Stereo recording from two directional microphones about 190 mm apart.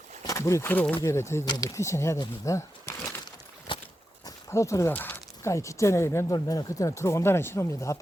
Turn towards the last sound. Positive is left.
turn(degrees=15)  # may be behind; listen again after turning